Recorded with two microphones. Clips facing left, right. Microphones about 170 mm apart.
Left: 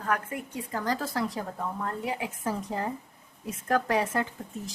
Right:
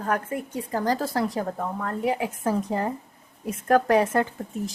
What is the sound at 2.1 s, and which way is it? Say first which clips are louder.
A woman's voice: right 10 dB; 55° right (ahead or behind).